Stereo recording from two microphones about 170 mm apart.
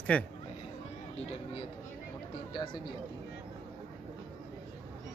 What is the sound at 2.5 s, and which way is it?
Speech, 25° left (ahead or behind).